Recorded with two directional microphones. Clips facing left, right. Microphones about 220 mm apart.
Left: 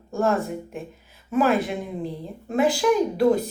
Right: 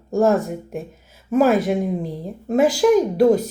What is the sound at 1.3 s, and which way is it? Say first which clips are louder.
Speech: right 5 dB; 45° right (ahead or behind).